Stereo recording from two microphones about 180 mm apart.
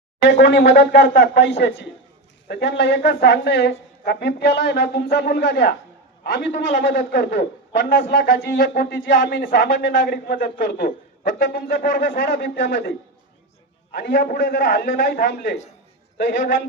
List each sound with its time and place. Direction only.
0.3 s a woman's voice: 70° left (ahead or behind)
13.9 s a woman's voice: 65° left (ahead or behind)
16.1 s a man's voice: 55° left (ahead or behind)